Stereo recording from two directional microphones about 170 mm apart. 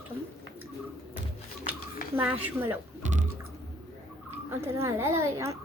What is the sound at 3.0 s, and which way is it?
Music, 45° right (ahead or behind).